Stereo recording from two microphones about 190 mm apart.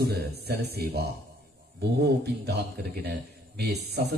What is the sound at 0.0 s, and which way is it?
A man's voice, 55° right (ahead or behind).